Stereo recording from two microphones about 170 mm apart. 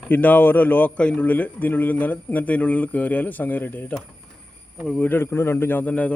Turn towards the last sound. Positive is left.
turn(degrees=10)  # may be behind; listen again after turning